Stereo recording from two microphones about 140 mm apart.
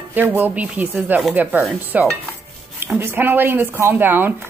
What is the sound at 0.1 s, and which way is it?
A woman's voice, 15° right (ahead or behind).